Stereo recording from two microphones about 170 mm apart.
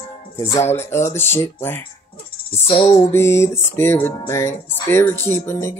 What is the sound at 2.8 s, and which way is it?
Speech, 15° left (ahead or behind).